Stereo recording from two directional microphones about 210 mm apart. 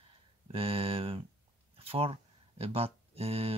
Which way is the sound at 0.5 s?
25° right (ahead or behind).